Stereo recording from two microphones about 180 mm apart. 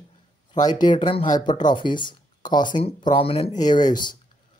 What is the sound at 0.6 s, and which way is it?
Speech, 25° left (ahead or behind).